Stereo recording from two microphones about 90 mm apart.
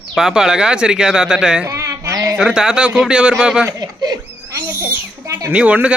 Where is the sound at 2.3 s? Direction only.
10° right (ahead or behind).